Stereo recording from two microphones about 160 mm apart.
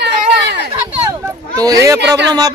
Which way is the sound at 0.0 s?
90° right.